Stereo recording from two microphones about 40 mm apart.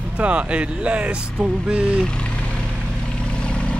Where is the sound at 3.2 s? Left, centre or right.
Left.